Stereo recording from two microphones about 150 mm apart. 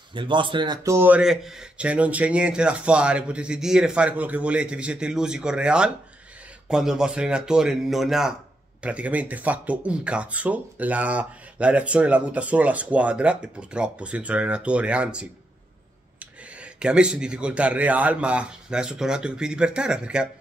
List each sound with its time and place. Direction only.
0.1 s speech: 30° right (ahead or behind)
0.8 s speech: 15° right (ahead or behind)